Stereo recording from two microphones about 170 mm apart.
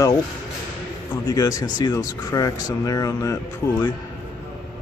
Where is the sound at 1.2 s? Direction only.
20° left (ahead or behind).